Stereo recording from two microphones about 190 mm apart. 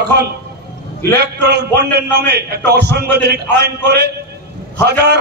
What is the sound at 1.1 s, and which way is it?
A man's voice, 60° right (ahead or behind).